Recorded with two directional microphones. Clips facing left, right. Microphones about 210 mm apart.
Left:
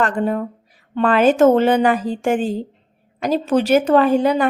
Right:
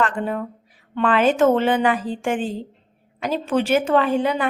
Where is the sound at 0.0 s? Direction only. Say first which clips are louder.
Left 4 dB; 40° left (ahead or behind).